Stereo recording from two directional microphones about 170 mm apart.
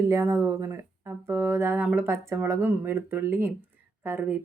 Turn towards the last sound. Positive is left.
turn(degrees=-15)  # may be behind; listen again after turning